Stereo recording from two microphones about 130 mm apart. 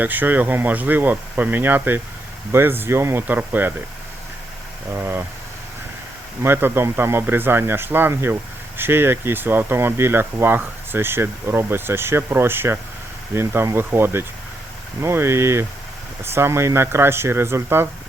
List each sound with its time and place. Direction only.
0.0 s speech: 15° right (ahead or behind)
4.9 s speech: 20° right (ahead or behind)
6.4 s speech: 15° right (ahead or behind)